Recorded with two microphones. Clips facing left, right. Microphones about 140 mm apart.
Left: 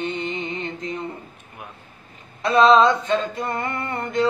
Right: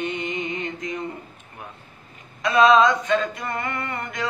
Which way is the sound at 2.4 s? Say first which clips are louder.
Left 1 dB; 30° left (ahead or behind).